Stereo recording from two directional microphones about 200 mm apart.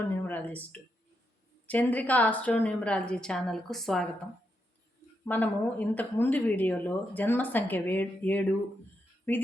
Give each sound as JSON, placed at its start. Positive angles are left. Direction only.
{"t": 0.3, "sound": "speech", "side_deg": 10}
{"t": 5.2, "sound": "speech", "side_deg": 10}